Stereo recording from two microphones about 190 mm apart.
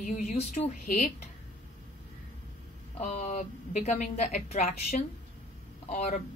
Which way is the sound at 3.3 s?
40° left (ahead or behind).